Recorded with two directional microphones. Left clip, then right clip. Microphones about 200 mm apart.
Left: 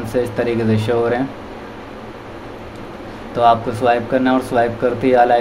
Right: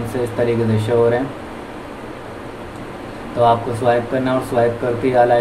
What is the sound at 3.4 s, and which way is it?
Speech, 45° left (ahead or behind).